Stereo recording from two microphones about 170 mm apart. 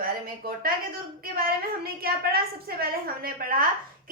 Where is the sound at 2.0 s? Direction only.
60° right (ahead or behind).